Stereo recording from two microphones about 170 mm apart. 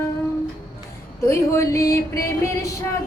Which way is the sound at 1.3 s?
15° left (ahead or behind).